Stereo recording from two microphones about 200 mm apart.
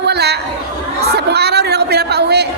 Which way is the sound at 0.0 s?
55° right (ahead or behind).